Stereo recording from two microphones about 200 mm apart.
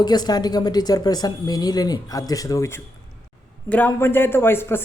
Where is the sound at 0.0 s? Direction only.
20° left (ahead or behind).